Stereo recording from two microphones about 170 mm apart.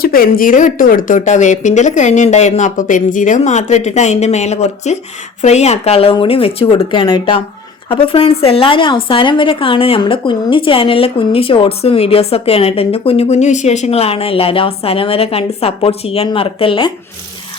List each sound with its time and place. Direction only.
0.0 s a woman's voice: 60° left (ahead or behind); by 16.9 s 30° left (ahead or behind)